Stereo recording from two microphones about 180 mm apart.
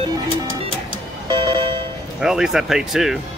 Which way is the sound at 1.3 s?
25° right (ahead or behind).